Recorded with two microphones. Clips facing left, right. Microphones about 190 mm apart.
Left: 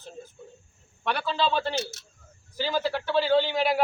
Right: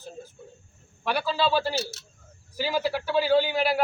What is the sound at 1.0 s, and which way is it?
A man's voice, 5° right (ahead or behind).